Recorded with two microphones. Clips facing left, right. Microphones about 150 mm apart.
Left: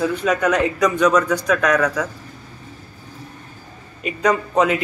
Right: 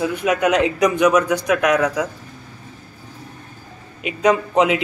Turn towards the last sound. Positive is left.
turn(degrees=-15)  # may be behind; listen again after turning